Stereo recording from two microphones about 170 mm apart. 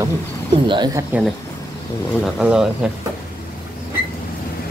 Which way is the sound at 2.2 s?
5° right (ahead or behind).